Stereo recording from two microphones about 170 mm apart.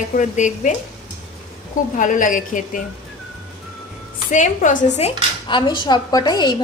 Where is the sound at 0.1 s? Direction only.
45° left (ahead or behind).